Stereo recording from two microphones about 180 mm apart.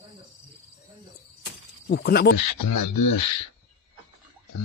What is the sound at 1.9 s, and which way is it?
Speech, 60° left (ahead or behind).